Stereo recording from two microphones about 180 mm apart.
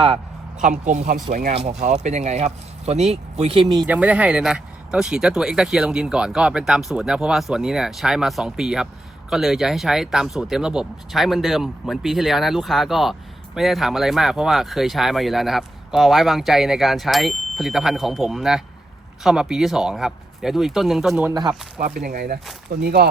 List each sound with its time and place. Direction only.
0.6 s speech: 45° right (ahead or behind); by 3.8 s 25° right (ahead or behind)
3.8 s speech: 10° right (ahead or behind)
21.2 s speech: 20° right (ahead or behind)
21.9 s speech: 55° right (ahead or behind)